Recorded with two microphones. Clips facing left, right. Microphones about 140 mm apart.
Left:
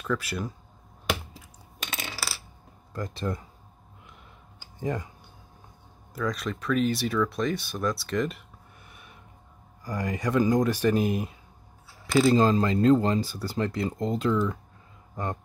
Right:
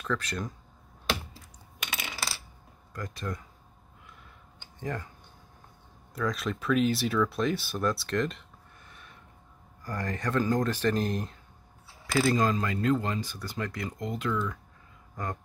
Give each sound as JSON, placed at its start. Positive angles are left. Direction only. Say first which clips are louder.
{"t": 0.0, "sound": "speech", "louder": "left 2 dB", "side_deg": 5}
{"t": 1.9, "sound": "coin", "louder": "left 2 dB", "side_deg": 30}
{"t": 2.9, "sound": "speech", "louder": "left 5 dB", "side_deg": 25}
{"t": 4.8, "sound": "speech", "louder": "left 5 dB", "side_deg": 15}
{"t": 6.1, "sound": "speech", "louder": "left 1 dB", "side_deg": 0}
{"t": 8.9, "sound": "a sound", "louder": "left 1 dB", "side_deg": 10}
{"t": 9.8, "sound": "speech", "louder": "left 3 dB", "side_deg": 10}
{"t": 12.2, "sound": "speech", "louder": "left 5 dB", "side_deg": 25}